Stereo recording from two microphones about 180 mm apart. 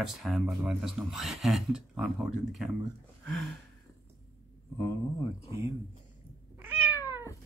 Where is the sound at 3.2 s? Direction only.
Centre (ahead or behind).